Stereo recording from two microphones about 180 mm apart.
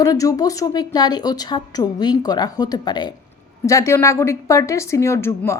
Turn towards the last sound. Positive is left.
turn(degrees=15)  # may be behind; listen again after turning